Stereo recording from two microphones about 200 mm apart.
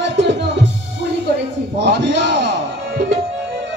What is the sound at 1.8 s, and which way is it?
Music, 60° right (ahead or behind).